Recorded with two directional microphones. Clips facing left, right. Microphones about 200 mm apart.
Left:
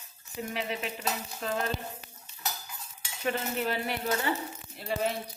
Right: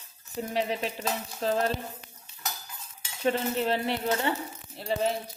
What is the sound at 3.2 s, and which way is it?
Speech, 30° right (ahead or behind).